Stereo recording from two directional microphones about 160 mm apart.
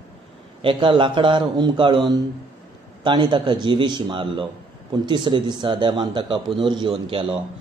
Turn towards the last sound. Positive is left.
turn(degrees=-35)  # may be behind; listen again after turning